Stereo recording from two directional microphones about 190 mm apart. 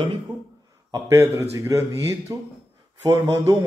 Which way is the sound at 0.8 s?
15° right (ahead or behind).